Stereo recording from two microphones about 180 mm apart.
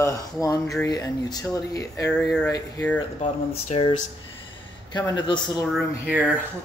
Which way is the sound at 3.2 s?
35° left (ahead or behind).